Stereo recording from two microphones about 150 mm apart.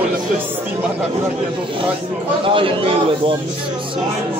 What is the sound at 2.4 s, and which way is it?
Speech, 35° right (ahead or behind).